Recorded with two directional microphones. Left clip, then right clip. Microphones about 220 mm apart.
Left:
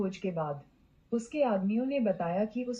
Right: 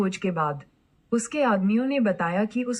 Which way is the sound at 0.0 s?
50° right (ahead or behind).